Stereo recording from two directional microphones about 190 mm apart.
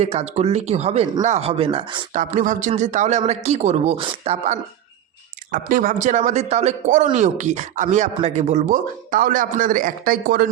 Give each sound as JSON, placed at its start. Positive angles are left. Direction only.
{"t": 0.0, "sound": "speech", "side_deg": -35}
{"t": 2.1, "sound": "speech", "side_deg": -40}
{"t": 5.5, "sound": "speech", "side_deg": -45}